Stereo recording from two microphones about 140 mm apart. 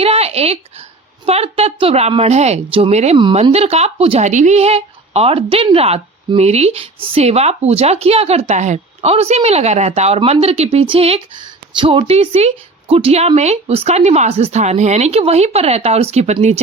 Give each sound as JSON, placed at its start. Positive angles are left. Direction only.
{"t": 0.0, "sound": "a woman's voice", "side_deg": -45}
{"t": 4.3, "sound": "speech", "side_deg": -60}